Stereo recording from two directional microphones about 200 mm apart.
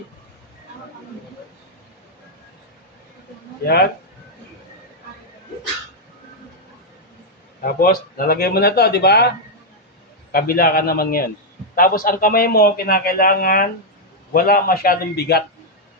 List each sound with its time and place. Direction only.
3.6 s a man's voice: 50° left (ahead or behind)
7.6 s a man's voice: 45° left (ahead or behind)
10.3 s a man's voice: 45° left (ahead or behind)